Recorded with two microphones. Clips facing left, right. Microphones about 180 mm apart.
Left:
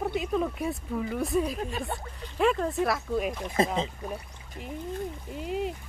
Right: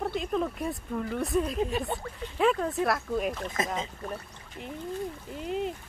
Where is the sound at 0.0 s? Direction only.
5° left (ahead or behind).